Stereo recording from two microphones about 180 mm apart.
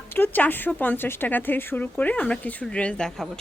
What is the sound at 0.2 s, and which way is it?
Speech, 10° left (ahead or behind).